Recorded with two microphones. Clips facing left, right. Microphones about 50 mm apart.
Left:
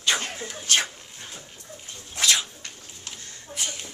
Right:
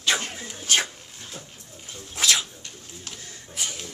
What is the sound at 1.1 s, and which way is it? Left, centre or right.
Dog, centre.